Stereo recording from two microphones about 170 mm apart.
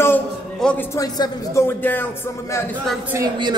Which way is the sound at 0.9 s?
25° left (ahead or behind).